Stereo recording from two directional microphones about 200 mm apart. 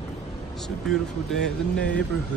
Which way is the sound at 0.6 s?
Centre (ahead or behind).